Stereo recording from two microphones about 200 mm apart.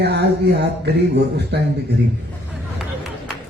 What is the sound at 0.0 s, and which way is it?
A man's voice, 55° right (ahead or behind).